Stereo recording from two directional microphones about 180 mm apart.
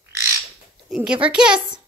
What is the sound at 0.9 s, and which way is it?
Speech, 5° right (ahead or behind).